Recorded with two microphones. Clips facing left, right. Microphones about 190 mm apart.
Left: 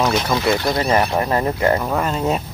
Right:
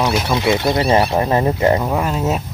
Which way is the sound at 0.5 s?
20° right (ahead or behind).